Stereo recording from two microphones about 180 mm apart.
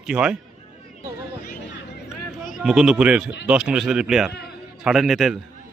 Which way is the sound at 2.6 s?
Centre (ahead or behind).